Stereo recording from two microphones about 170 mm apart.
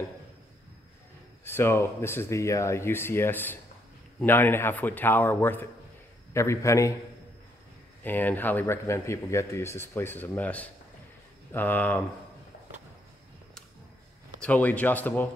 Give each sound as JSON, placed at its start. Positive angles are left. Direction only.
{"t": 1.4, "sound": "speech", "side_deg": 15}
{"t": 8.0, "sound": "speech", "side_deg": 10}
{"t": 14.4, "sound": "speech", "side_deg": 10}